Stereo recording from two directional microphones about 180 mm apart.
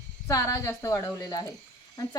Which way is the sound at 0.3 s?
15° left (ahead or behind).